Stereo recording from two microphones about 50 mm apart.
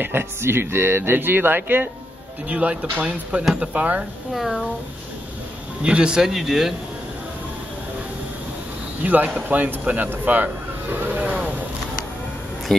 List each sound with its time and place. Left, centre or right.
0.0 s speech: right
2.5 s speech: right
4.3 s speech: centre
5.8 s speech: right
6.2 s speech: centre
9.0 s speech: right
11.0 s vehicle: right